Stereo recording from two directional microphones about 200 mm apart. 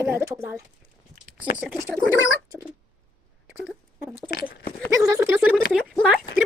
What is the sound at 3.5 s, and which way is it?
Rodents, 5° right (ahead or behind).